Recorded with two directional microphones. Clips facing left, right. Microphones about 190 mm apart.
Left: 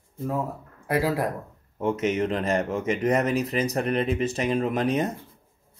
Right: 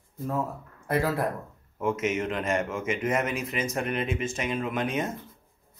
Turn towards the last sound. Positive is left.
turn(degrees=35)  # may be behind; listen again after turning